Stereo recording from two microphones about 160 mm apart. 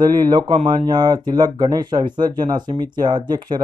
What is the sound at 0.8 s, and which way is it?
Speech, 25° right (ahead or behind).